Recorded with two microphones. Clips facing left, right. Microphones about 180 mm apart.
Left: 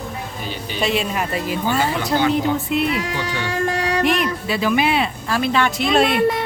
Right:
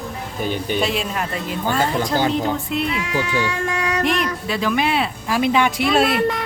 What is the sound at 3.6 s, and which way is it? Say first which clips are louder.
Music: left 2 dB; 35° left (ahead or behind).